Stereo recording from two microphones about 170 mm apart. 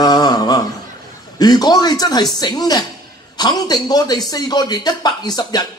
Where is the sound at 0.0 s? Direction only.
25° left (ahead or behind).